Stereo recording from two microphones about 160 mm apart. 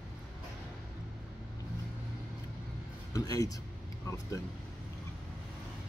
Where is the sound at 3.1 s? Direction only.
25° left (ahead or behind).